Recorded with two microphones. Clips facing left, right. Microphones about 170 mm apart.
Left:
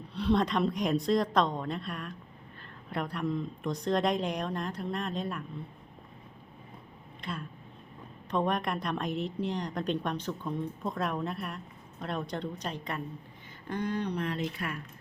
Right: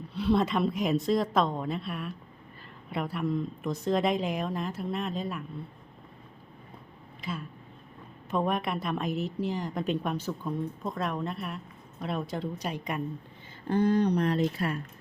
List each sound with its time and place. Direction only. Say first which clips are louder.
0.1 s a woman's voice: right 1 dB; 5° right (ahead or behind)
7.2 s a woman's voice: right 2 dB; 5° right (ahead or behind)
13.7 s speech: right 8 dB; 35° right (ahead or behind)